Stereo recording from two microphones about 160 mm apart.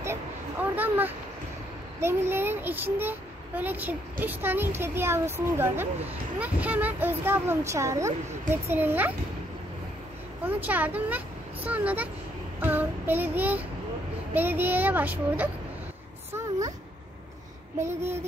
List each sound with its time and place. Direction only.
0.7 s a sound: 10° right (ahead or behind)
2.0 s a child's voice: 15° right (ahead or behind)
10.4 s speech: 10° right (ahead or behind)
12.5 s child singing: 10° right (ahead or behind)
14.3 s a child's voice: 10° right (ahead or behind)
16.3 s a sound: 20° right (ahead or behind)
17.7 s a child's voice: 15° right (ahead or behind)